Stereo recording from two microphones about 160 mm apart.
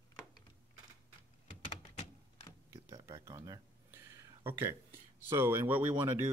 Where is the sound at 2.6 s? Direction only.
20° right (ahead or behind).